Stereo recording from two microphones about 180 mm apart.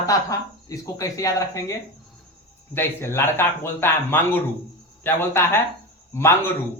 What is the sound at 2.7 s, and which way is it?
Speech, 15° left (ahead or behind).